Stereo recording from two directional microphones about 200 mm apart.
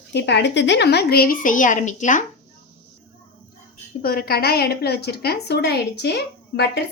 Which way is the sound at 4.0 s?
50° left (ahead or behind).